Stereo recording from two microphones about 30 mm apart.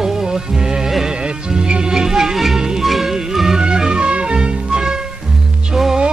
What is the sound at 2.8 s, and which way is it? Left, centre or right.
Music, centre.